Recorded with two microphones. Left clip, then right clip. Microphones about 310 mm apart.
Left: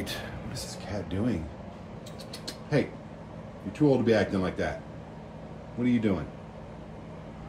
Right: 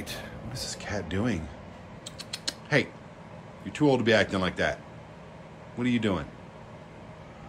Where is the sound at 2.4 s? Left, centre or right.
Centre.